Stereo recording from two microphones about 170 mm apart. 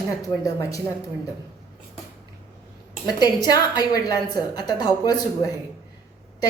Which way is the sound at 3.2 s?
25° left (ahead or behind).